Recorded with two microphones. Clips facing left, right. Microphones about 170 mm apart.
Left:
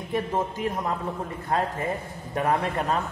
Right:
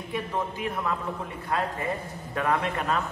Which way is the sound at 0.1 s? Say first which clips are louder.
Left 4 dB; 45° left (ahead or behind).